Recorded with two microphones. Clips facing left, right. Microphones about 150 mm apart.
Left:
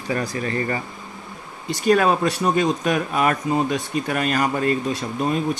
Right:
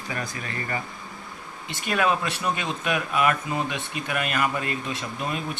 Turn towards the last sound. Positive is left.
turn(degrees=40)  # may be behind; listen again after turning